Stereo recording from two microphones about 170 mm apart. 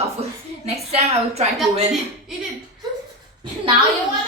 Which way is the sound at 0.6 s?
40° right (ahead or behind).